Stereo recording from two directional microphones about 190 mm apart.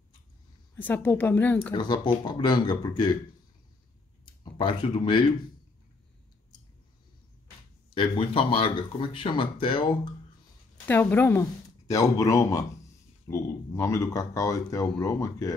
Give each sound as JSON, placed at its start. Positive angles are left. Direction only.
{"t": 0.7, "sound": "speech", "side_deg": 10}
{"t": 1.7, "sound": "speech", "side_deg": 25}
{"t": 4.3, "sound": "speech", "side_deg": 25}
{"t": 7.9, "sound": "speech", "side_deg": 30}
{"t": 10.9, "sound": "speech", "side_deg": 10}